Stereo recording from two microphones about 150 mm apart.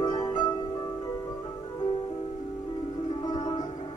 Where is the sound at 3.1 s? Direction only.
30° left (ahead or behind).